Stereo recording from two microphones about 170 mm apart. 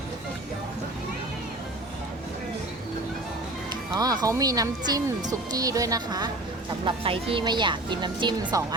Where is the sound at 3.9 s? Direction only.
25° right (ahead or behind).